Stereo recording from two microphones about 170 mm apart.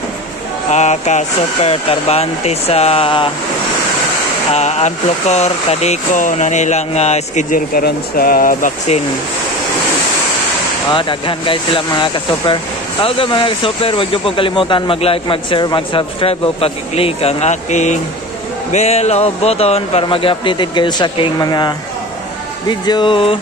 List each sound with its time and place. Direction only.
0.7 s speech: 40° left (ahead or behind)
4.6 s speech: 40° left (ahead or behind)
7.5 s speech: 60° left (ahead or behind)
10.9 s speech: 30° left (ahead or behind)